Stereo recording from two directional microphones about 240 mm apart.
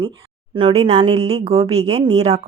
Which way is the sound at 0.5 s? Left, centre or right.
Right.